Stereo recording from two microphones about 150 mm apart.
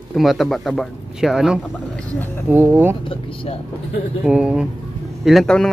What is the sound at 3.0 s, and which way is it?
Speech, 35° left (ahead or behind).